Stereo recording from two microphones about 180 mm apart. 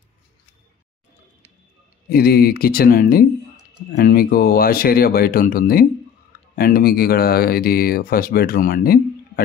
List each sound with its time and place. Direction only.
2.0 s speech: 55° left (ahead or behind)